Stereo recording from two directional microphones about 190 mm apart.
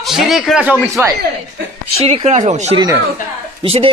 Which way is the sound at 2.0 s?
35° right (ahead or behind).